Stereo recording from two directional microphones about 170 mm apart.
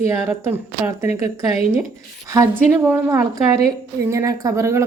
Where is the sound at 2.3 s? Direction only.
15° right (ahead or behind).